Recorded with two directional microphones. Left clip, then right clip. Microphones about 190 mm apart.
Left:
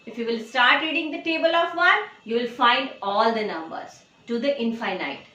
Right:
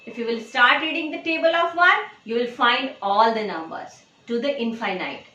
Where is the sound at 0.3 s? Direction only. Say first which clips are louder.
Right 1 dB; 15° right (ahead or behind).